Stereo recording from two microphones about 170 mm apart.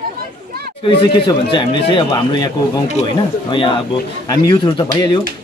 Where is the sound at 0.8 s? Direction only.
30° left (ahead or behind).